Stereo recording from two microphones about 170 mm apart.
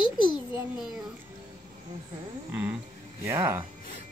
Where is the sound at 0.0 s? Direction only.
25° left (ahead or behind).